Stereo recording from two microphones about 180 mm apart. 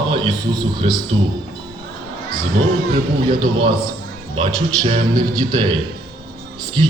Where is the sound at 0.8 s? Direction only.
35° right (ahead or behind).